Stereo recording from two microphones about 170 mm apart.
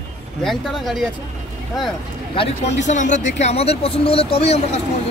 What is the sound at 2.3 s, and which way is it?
Speech, 40° left (ahead or behind).